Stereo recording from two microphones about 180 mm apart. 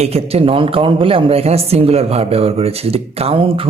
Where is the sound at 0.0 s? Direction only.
35° right (ahead or behind).